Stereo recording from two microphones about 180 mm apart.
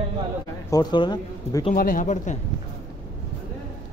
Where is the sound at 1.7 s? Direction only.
50° left (ahead or behind).